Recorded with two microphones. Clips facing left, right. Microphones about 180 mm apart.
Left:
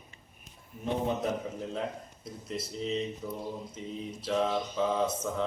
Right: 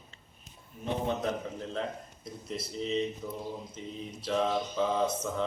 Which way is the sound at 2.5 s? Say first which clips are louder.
Even; centre (ahead or behind).